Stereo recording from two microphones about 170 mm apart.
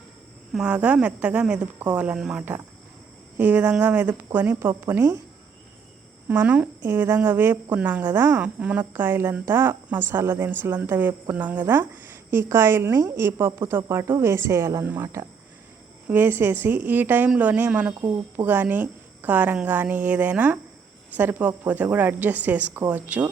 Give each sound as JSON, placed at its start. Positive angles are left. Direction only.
{"t": 0.5, "sound": "a woman's voice", "side_deg": -5}
{"t": 6.2, "sound": "a woman's voice", "side_deg": -10}